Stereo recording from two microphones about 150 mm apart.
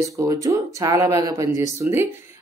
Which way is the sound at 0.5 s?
20° right (ahead or behind).